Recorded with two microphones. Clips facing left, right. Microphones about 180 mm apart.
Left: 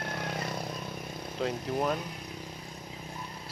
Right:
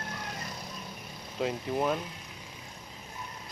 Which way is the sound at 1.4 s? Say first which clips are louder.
Right 1 dB; centre (ahead or behind).